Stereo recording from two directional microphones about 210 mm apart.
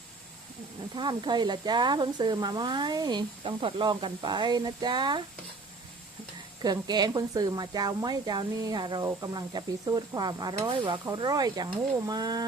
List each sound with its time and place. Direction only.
0.9 s speech: 20° right (ahead or behind)
6.6 s speech: 20° right (ahead or behind)